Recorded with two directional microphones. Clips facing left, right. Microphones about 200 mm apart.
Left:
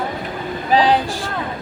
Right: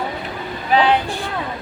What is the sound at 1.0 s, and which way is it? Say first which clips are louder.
Vehicle: even; 90° left.